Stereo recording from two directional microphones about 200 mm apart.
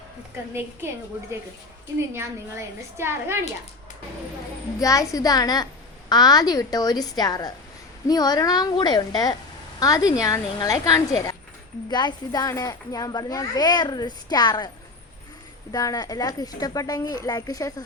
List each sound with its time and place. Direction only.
2.1 s a woman's voice: 10° right (ahead or behind)
4.8 s a woman's voice: 15° left (ahead or behind)
15.7 s a child's voice: 20° left (ahead or behind)